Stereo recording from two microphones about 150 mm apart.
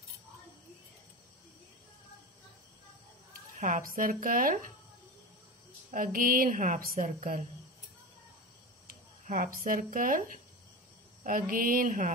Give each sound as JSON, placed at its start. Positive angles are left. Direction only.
{"t": 3.5, "sound": "a woman's voice", "side_deg": -60}
{"t": 5.9, "sound": "a woman's voice", "side_deg": -65}
{"t": 8.8, "sound": "a woman's voice", "side_deg": -60}